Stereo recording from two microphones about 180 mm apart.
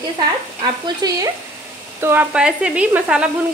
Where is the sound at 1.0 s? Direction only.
20° right (ahead or behind).